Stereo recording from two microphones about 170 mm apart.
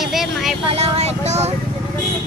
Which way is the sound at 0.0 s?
Centre (ahead or behind).